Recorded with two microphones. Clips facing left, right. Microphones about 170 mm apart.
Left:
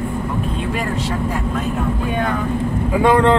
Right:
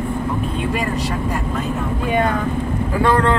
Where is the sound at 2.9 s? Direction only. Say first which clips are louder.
Left 3 dB; 15° left (ahead or behind).